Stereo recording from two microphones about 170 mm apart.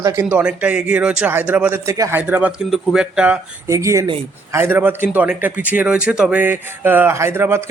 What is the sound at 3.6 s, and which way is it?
A man's voice, 15° right (ahead or behind).